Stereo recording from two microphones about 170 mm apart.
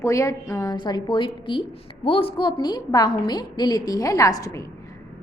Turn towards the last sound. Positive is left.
turn(degrees=20)  # may be behind; listen again after turning